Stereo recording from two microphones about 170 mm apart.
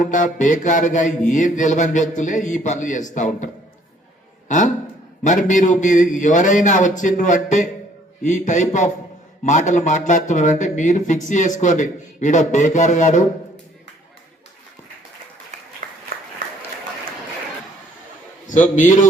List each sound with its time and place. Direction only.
0.0 s a man's voice: 45° left (ahead or behind)
15.8 s a sound: 55° right (ahead or behind)
18.4 s speech: 50° left (ahead or behind)